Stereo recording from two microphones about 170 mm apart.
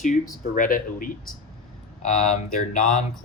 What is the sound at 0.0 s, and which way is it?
Speech, 50° left (ahead or behind).